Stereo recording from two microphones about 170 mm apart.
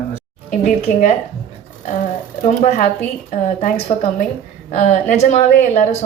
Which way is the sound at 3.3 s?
40° left (ahead or behind).